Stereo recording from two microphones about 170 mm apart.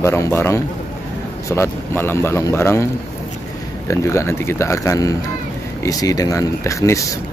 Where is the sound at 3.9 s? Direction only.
15° left (ahead or behind).